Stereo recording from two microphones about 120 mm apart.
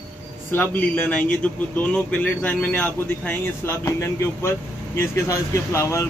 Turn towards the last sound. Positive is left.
turn(degrees=25)  # may be behind; listen again after turning